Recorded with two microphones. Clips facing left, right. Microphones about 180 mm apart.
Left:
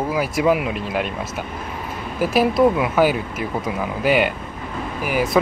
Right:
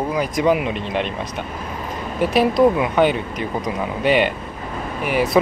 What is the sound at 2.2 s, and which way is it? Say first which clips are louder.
Speech: right 1 dB; centre (ahead or behind).